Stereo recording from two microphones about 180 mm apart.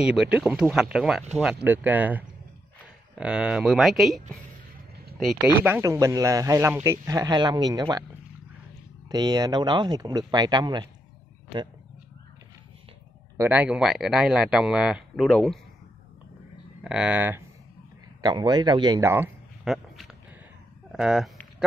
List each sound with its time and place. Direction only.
0.0 s speech: 5° right (ahead or behind)
5.6 s speech: 15° right (ahead or behind)
9.1 s speech: 20° right (ahead or behind)
13.4 s speech: 10° right (ahead or behind)
16.8 s speech: 5° right (ahead or behind)
18.2 s a man's voice: 25° right (ahead or behind); by 21.3 s 5° right (ahead or behind)